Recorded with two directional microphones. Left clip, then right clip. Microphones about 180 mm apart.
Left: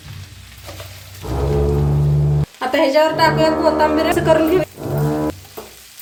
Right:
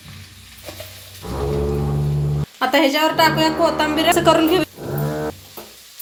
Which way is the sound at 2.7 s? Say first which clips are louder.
Left 3 dB; 45° right (ahead or behind).